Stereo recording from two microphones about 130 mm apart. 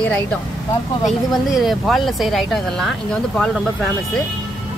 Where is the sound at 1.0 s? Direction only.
Centre (ahead or behind).